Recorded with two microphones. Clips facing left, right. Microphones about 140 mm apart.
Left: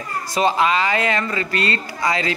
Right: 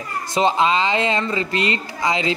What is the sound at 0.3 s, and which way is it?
Speech, 25° right (ahead or behind).